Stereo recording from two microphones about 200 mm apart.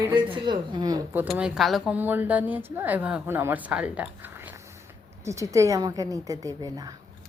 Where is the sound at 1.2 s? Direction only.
5° right (ahead or behind).